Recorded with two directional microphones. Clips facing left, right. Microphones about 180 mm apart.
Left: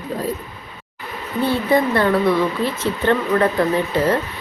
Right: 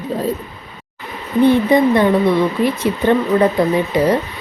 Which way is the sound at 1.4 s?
20° right (ahead or behind).